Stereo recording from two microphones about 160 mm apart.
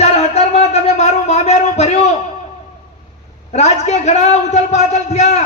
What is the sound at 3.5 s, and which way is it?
Speech, 45° left (ahead or behind).